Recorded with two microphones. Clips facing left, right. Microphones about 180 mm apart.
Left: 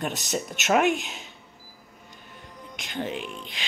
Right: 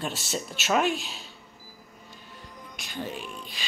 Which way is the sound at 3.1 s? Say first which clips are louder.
Left 3 dB; 15° left (ahead or behind).